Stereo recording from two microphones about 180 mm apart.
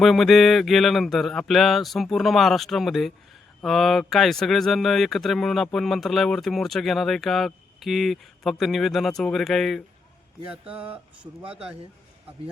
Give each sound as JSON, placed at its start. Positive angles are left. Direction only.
{"t": 0.0, "sound": "speech", "side_deg": 0}
{"t": 11.4, "sound": "speech", "side_deg": -35}